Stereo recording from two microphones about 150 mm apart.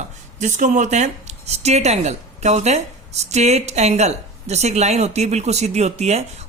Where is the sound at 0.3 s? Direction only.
55° right (ahead or behind).